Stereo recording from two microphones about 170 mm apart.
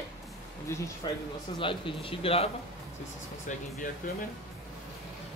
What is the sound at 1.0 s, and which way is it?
Speech, 25° left (ahead or behind).